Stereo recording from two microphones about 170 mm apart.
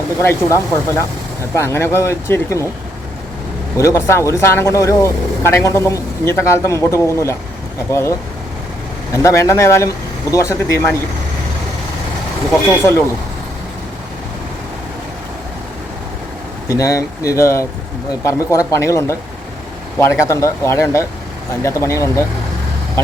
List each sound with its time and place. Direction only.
0.2 s speech: 15° left (ahead or behind)
3.8 s speech: 15° left (ahead or behind)
9.1 s speech: 15° left (ahead or behind)
12.7 s speech: 15° left (ahead or behind)
16.6 s speech: 20° left (ahead or behind)